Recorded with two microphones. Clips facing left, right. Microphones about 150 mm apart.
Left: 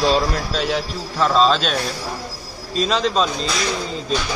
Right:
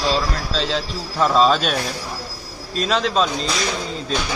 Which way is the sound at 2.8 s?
Centre (ahead or behind).